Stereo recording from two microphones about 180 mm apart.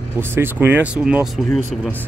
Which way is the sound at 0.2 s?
10° right (ahead or behind).